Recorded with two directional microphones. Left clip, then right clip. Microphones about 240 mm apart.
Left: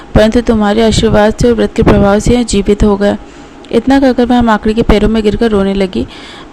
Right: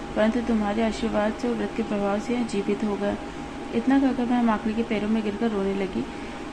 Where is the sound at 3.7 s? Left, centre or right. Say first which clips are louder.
Left 15 dB; left.